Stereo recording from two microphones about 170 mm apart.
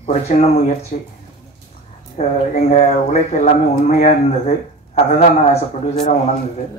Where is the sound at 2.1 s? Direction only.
40° left (ahead or behind).